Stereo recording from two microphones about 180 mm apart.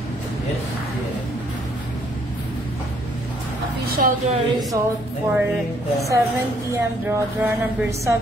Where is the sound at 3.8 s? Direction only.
55° right (ahead or behind).